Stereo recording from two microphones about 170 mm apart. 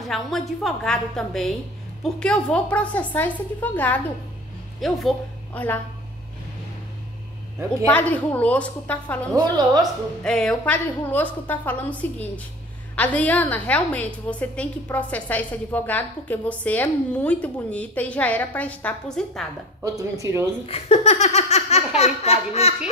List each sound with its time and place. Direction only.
0.1 s a woman's voice: centre (ahead or behind)
7.8 s a woman's voice: 10° left (ahead or behind)
19.8 s speech: 20° right (ahead or behind)
20.6 s a sound: 35° left (ahead or behind)